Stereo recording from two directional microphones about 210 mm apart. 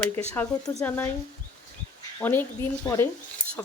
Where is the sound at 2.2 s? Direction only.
5° left (ahead or behind).